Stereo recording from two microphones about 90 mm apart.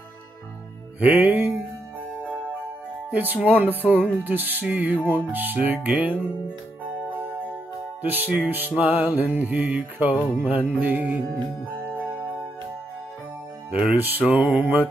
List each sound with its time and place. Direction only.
0.9 s music: 15° right (ahead or behind)
3.1 s music: 20° right (ahead or behind)
8.0 s music: 20° right (ahead or behind)
13.7 s music: 15° right (ahead or behind)